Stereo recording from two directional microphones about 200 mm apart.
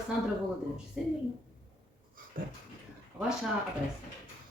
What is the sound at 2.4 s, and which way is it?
Speech, 45° right (ahead or behind).